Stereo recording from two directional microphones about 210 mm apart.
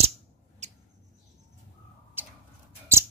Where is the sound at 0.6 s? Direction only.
30° right (ahead or behind).